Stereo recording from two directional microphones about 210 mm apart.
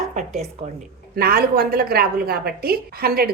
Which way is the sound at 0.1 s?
35° right (ahead or behind).